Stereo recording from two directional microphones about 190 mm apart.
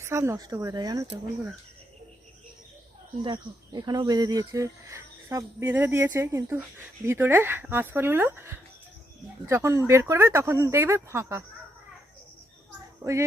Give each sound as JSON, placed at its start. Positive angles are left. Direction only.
{"t": 0.0, "sound": "speech", "side_deg": -15}
{"t": 3.2, "sound": "speech", "side_deg": -25}
{"t": 13.0, "sound": "speech", "side_deg": -20}